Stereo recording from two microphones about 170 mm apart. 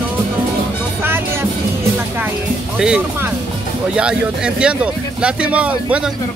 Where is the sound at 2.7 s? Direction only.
5° right (ahead or behind).